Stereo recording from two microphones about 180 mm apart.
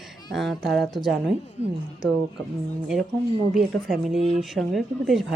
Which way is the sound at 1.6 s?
35° left (ahead or behind).